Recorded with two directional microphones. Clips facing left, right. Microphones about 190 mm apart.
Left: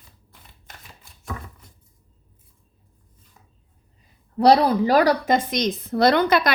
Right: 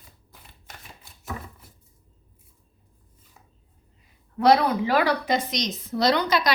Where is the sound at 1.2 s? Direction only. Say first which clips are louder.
Left 1 dB; 5° right (ahead or behind).